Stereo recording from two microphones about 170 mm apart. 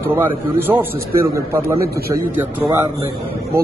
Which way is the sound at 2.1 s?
10° right (ahead or behind).